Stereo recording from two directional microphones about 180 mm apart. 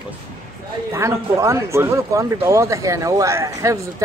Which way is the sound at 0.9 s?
15° right (ahead or behind).